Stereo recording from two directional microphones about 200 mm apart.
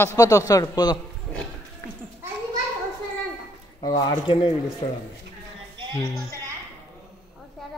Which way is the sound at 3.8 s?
20° left (ahead or behind).